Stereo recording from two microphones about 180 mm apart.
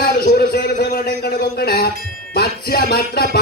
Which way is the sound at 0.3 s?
65° left (ahead or behind).